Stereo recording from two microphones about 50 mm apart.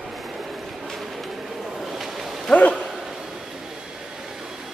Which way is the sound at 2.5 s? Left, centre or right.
Left.